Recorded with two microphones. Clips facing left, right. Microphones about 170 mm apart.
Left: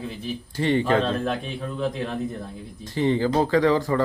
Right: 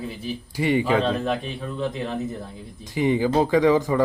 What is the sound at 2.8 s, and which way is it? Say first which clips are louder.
Speech: right 1 dB; 15° right (ahead or behind).